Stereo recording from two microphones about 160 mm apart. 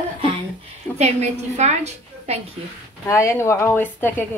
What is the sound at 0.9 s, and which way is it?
A woman's voice, 45° right (ahead or behind).